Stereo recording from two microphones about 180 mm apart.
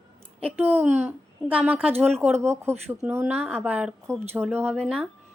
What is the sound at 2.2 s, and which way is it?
Speech, 15° right (ahead or behind).